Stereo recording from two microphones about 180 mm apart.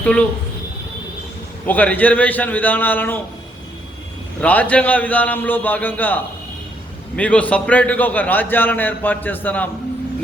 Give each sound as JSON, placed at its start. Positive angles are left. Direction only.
{"t": 0.0, "sound": "speech", "side_deg": 5}
{"t": 1.6, "sound": "a man's voice", "side_deg": 10}
{"t": 4.4, "sound": "a man's voice", "side_deg": 10}
{"t": 7.2, "sound": "a man's voice", "side_deg": 5}